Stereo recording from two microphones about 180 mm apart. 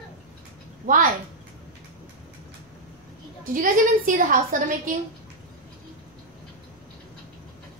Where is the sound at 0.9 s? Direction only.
50° right (ahead or behind).